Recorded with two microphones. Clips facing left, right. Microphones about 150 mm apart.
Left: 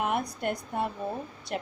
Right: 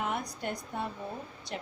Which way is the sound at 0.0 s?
60° left (ahead or behind).